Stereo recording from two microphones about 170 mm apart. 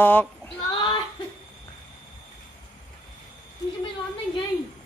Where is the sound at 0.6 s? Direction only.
25° left (ahead or behind).